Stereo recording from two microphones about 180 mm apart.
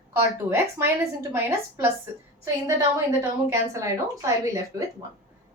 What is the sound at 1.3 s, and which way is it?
A woman's voice, 15° right (ahead or behind).